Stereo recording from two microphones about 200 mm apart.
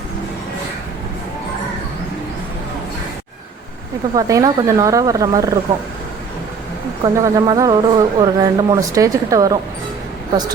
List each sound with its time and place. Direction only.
4.1 s speech: 15° right (ahead or behind)
7.0 s speech: 20° right (ahead or behind)